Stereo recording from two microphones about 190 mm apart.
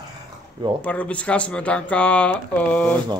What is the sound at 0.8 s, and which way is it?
Speech, 5° left (ahead or behind).